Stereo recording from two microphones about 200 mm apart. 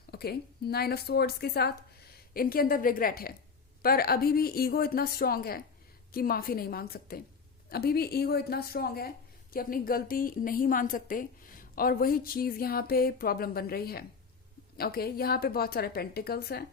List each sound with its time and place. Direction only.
0.1 s speech: 50° left (ahead or behind)